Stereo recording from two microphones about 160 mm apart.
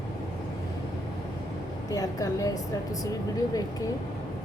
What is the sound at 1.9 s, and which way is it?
Speech, 20° left (ahead or behind).